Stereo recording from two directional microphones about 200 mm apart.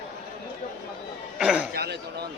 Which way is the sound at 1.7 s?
55° right (ahead or behind).